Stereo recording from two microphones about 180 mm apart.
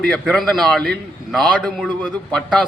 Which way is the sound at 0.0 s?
5° left (ahead or behind).